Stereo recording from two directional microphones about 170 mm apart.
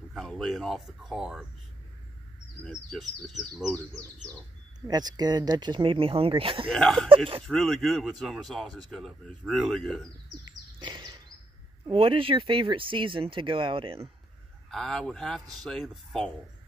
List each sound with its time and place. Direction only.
0.1 s speech: centre (ahead or behind)
2.6 s speech: centre (ahead or behind)
4.8 s speech: 25° right (ahead or behind)
6.7 s speech: centre (ahead or behind)
10.4 s bird: 25° right (ahead or behind)
11.9 s speech: 30° right (ahead or behind)
14.7 s speech: centre (ahead or behind)